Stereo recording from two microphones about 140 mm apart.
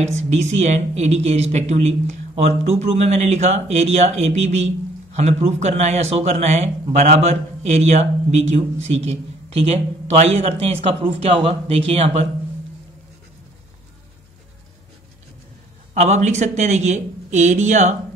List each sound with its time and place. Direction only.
0.0 s speech: 55° right (ahead or behind)
15.9 s speech: 55° right (ahead or behind)